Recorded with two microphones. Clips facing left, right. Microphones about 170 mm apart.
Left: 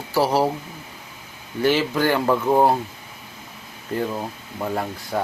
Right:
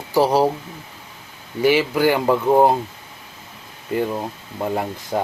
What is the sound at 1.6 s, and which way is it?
Speech, 10° right (ahead or behind).